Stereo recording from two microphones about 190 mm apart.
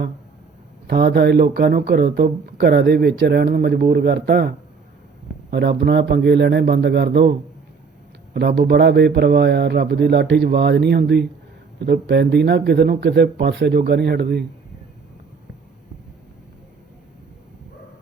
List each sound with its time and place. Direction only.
0.9 s a man's voice: 60° right (ahead or behind)
5.5 s a man's voice: 65° right (ahead or behind)